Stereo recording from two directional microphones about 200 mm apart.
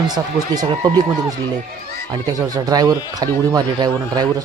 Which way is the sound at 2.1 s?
20° right (ahead or behind).